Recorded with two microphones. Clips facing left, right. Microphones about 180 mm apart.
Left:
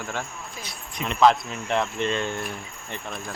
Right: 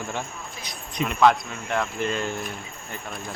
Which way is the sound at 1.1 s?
Centre (ahead or behind).